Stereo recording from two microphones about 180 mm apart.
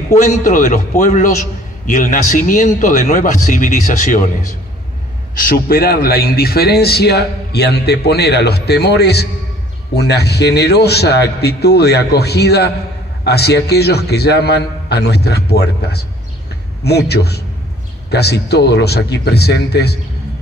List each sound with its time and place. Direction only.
0.1 s a man's voice: 45° left (ahead or behind)
5.3 s a man's voice: 50° left (ahead or behind)